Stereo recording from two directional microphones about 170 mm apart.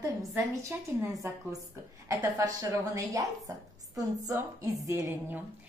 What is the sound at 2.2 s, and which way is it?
A woman's voice, 20° right (ahead or behind).